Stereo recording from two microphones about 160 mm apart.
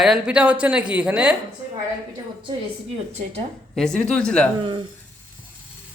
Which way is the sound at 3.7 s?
5° left (ahead or behind).